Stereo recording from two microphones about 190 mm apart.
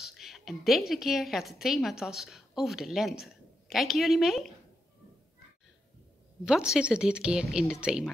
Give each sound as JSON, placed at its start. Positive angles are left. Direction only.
{"t": 0.0, "sound": "a woman's voice", "side_deg": 0}
{"t": 6.4, "sound": "speech", "side_deg": -5}